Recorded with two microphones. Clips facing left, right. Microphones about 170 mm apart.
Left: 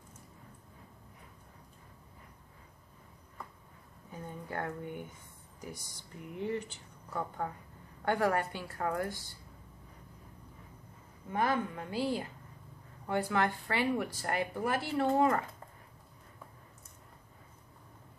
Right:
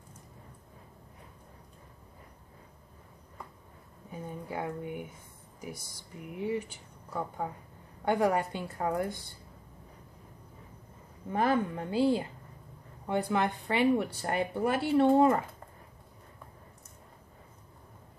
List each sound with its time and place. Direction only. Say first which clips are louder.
4.5 s a woman's voice: right 2 dB; 10° right (ahead or behind)
6.3 s a woman's voice: right 3 dB; 10° right (ahead or behind)
11.3 s speech: right 4 dB; 30° right (ahead or behind)